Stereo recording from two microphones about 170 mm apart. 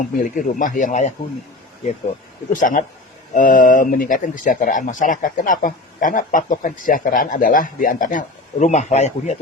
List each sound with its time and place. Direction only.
0.0 s speech: 50° left (ahead or behind)
2.5 s speech: 50° left (ahead or behind)